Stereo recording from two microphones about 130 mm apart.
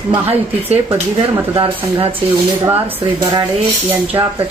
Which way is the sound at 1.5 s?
45° right (ahead or behind).